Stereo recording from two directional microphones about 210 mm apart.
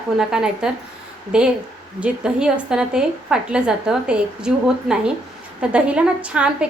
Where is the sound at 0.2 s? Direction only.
5° right (ahead or behind).